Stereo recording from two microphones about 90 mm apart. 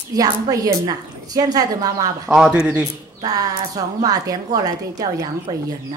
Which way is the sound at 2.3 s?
10° right (ahead or behind).